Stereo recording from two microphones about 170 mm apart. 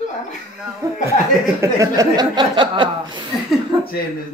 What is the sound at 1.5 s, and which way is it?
Speech, 20° right (ahead or behind).